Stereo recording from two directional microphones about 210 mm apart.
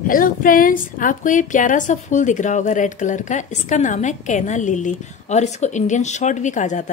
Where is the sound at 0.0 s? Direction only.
40° left (ahead or behind).